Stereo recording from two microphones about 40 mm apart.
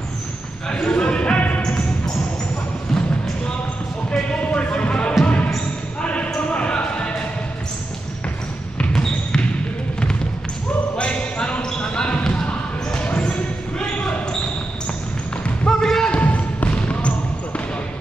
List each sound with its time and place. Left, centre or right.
0.7 s basketball bounce: left
4.1 s music: left
5.2 s basketball bounce: left
8.9 s basketball bounce: centre
11.0 s basketball bounce: left
15.6 s basketball bounce: centre
16.1 s basketball bounce: left